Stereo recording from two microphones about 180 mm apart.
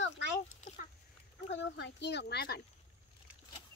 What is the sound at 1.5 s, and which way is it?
A child's voice, 75° left (ahead or behind).